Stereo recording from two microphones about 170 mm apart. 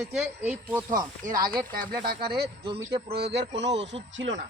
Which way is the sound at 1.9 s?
65° right (ahead or behind).